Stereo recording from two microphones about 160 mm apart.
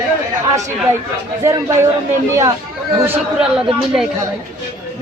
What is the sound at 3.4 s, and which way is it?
Speech, 5° right (ahead or behind).